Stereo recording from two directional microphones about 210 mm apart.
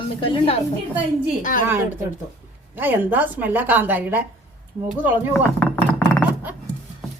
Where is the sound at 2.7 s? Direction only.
10° right (ahead or behind).